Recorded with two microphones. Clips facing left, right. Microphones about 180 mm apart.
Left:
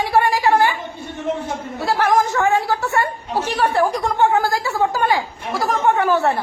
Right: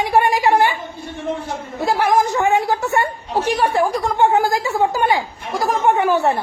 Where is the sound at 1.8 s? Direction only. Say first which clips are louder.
Right 1 dB; 10° right (ahead or behind).